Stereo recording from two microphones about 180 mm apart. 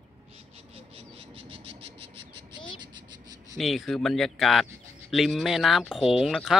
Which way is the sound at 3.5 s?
Centre (ahead or behind).